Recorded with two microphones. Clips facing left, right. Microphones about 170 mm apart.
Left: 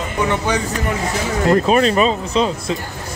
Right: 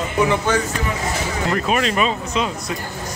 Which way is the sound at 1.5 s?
35° left (ahead or behind).